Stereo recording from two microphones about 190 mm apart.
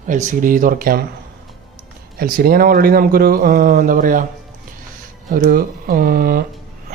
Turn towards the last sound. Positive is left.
turn(degrees=-50)  # may be behind; listen again after turning